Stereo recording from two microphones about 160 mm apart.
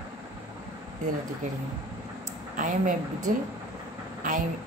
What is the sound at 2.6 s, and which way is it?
Speech, 50° right (ahead or behind).